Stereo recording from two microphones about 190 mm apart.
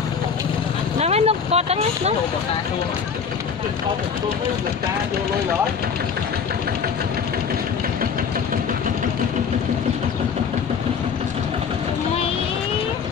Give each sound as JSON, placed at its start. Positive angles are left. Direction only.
{"t": 0.9, "sound": "vehicle", "side_deg": -35}